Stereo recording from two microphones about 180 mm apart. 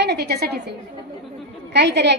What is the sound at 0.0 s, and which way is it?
A woman's voice, 65° right (ahead or behind).